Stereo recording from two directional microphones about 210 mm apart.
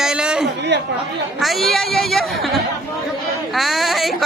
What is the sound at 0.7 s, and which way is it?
Speech, 55° right (ahead or behind).